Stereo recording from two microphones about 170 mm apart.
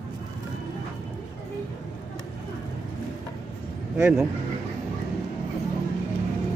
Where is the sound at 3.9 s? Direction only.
5° right (ahead or behind).